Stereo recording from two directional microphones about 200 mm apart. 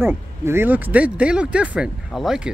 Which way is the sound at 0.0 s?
10° right (ahead or behind).